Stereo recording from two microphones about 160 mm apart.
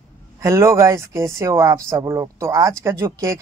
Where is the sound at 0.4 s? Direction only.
20° right (ahead or behind).